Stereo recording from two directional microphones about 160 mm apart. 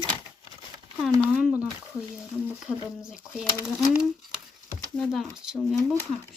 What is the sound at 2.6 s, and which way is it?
A child's voice, 5° right (ahead or behind).